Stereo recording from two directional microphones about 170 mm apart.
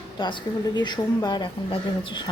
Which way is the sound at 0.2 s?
25° left (ahead or behind).